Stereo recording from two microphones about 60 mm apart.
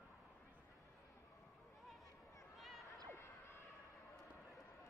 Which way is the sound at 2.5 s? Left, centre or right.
Centre.